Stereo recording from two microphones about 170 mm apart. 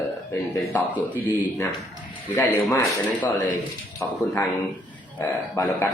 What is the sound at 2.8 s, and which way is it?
Speech, 10° left (ahead or behind).